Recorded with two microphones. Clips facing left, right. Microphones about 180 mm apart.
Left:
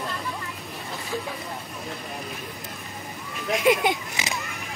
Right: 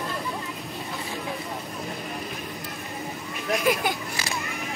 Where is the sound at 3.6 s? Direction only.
20° left (ahead or behind).